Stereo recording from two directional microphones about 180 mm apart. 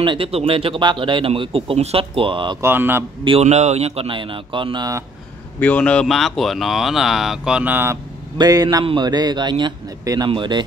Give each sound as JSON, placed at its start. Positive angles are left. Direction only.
{"t": 0.0, "sound": "speech", "side_deg": -30}
{"t": 2.6, "sound": "speech", "side_deg": -10}
{"t": 3.3, "sound": "speech", "side_deg": -35}
{"t": 5.6, "sound": "speech", "side_deg": 10}